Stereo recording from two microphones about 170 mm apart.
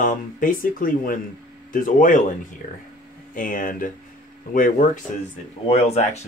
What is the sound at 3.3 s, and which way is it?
Speech, 50° left (ahead or behind).